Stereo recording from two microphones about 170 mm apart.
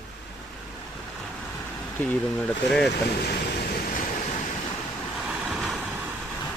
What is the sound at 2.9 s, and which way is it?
Boat, 70° left (ahead or behind).